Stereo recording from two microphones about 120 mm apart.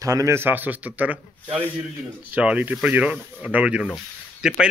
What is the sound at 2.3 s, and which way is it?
Speech, 10° right (ahead or behind).